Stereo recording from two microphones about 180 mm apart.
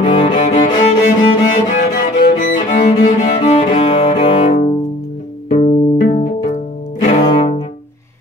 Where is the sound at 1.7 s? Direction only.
45° left (ahead or behind).